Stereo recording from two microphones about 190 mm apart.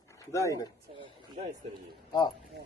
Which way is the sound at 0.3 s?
15° left (ahead or behind).